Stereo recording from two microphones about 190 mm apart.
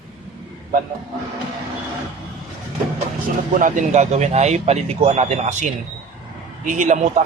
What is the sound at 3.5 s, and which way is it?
A man's voice, 40° right (ahead or behind).